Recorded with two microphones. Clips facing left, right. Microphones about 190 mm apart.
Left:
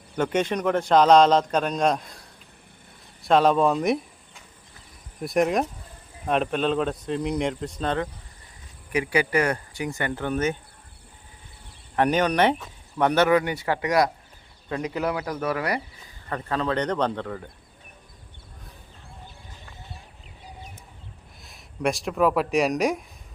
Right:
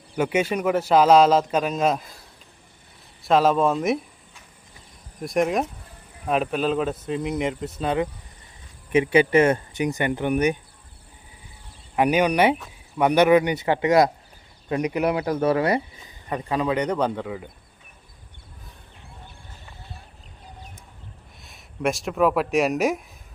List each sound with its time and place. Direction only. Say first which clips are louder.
0.2 s a man's voice: right 1 dB; 10° right (ahead or behind)
3.2 s a man's voice: even; centre (ahead or behind)
5.2 s a man's voice: even; centre (ahead or behind)
8.9 s speech: right 6 dB; 25° right (ahead or behind)
11.9 s speech: right 2 dB; 10° right (ahead or behind)
21.4 s speech: right 1 dB; centre (ahead or behind)